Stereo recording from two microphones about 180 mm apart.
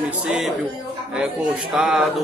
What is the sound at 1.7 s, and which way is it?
Speech, 5° right (ahead or behind).